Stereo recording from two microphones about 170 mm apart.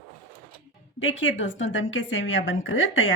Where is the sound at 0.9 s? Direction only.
90° left.